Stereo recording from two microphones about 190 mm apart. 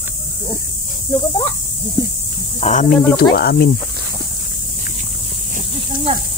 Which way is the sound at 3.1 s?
55° left (ahead or behind).